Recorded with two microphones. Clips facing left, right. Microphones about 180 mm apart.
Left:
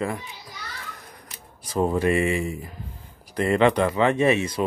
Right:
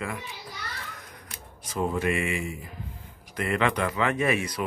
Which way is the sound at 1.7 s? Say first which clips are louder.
Left 5 dB; 35° left (ahead or behind).